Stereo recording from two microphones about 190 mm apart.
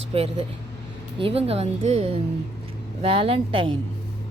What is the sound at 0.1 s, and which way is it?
Speech, 35° right (ahead or behind).